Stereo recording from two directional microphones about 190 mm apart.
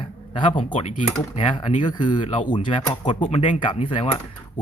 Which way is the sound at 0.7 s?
35° left (ahead or behind).